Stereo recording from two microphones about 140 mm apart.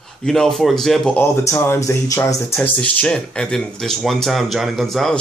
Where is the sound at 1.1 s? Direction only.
15° left (ahead or behind).